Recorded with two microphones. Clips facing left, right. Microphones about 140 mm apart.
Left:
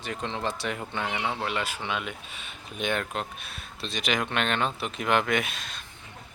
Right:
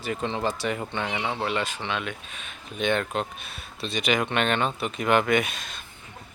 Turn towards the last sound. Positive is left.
turn(degrees=0)  # may be behind; listen again after turning